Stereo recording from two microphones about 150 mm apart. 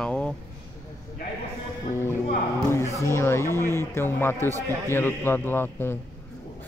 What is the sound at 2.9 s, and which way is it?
Speech, 15° left (ahead or behind).